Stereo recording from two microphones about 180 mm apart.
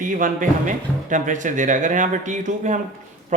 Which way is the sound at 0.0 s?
45° right (ahead or behind).